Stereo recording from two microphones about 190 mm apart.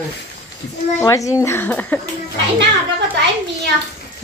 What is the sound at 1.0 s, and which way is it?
Speech, 15° left (ahead or behind).